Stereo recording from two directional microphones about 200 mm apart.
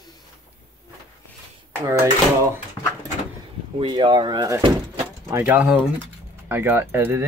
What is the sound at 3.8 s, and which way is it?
Speech, 20° right (ahead or behind).